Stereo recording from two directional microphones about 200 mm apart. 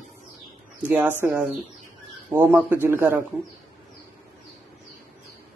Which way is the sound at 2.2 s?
10° right (ahead or behind).